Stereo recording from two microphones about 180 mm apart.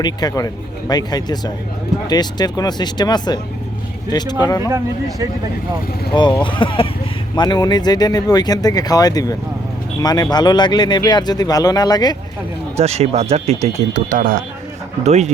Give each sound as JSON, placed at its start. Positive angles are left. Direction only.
{"t": 0.0, "sound": "speech", "side_deg": 20}
{"t": 4.7, "sound": "speech", "side_deg": -20}
{"t": 6.4, "sound": "speech", "side_deg": 25}
{"t": 12.8, "sound": "speech", "side_deg": -35}
{"t": 13.9, "sound": "speech", "side_deg": -50}
{"t": 15.0, "sound": "speech", "side_deg": -40}